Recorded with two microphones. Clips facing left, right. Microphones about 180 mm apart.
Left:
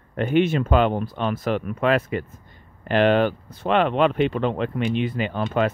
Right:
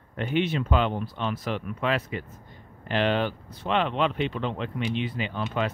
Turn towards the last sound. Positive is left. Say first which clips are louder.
# left 6 dB
turn(degrees=50)  # may be behind; listen again after turning